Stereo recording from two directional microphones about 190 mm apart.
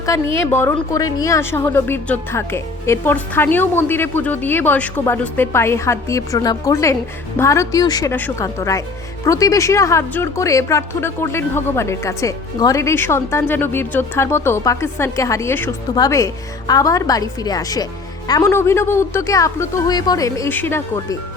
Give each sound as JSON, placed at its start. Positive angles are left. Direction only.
{"t": 0.3, "sound": "a woman's voice", "side_deg": 15}